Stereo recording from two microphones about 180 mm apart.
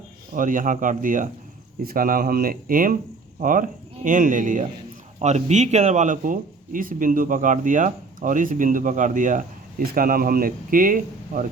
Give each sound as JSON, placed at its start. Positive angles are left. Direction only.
{"t": 0.3, "sound": "speech", "side_deg": -50}